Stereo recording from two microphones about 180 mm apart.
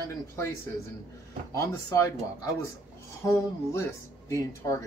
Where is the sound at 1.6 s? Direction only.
15° left (ahead or behind).